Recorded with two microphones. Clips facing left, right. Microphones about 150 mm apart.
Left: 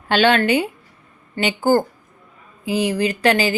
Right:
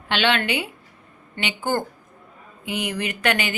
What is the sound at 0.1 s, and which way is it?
Speech, 40° left (ahead or behind).